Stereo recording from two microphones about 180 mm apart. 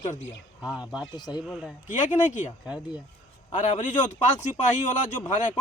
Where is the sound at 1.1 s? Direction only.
25° left (ahead or behind).